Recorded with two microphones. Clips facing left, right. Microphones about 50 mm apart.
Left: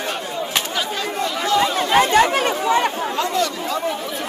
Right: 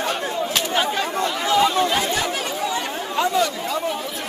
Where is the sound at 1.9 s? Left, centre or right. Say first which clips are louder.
Left 7 dB; left.